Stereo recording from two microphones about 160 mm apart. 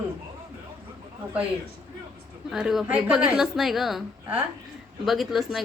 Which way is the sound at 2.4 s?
5° right (ahead or behind).